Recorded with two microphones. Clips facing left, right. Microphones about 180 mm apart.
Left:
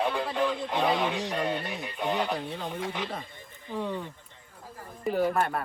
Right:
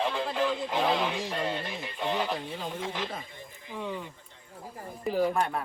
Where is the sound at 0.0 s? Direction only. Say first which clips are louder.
Left 1 dB; centre (ahead or behind).